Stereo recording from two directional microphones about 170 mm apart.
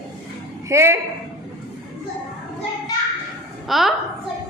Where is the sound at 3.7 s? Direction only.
Centre (ahead or behind).